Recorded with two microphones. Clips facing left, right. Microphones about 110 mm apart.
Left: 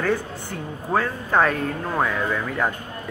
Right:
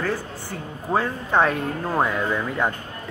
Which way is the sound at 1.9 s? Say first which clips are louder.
Right 2 dB; 15° right (ahead or behind).